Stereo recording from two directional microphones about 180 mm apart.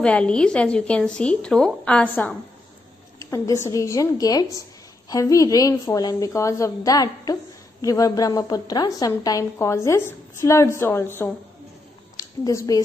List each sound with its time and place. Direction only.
0.0 s a woman's voice: 5° left (ahead or behind)